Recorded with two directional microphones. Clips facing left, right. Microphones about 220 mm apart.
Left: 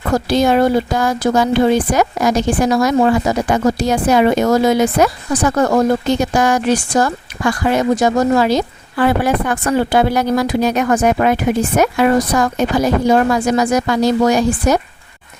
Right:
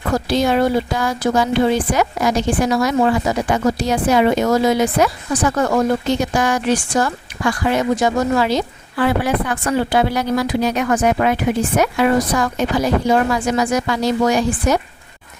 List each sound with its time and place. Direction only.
0.3 s a woman's voice: 45° left (ahead or behind)